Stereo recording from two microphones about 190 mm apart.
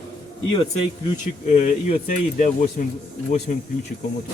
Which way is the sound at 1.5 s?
40° left (ahead or behind).